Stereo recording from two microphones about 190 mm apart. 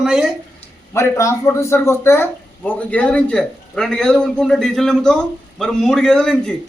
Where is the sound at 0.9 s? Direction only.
15° left (ahead or behind).